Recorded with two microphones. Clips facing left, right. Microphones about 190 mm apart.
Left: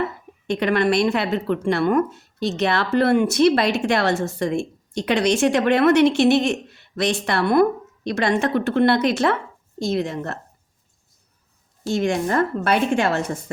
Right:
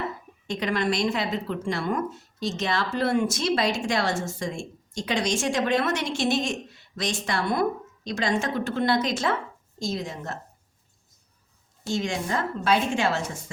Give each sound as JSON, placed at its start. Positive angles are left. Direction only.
{"t": 0.4, "sound": "speech", "side_deg": 65}
{"t": 11.9, "sound": "speech", "side_deg": 60}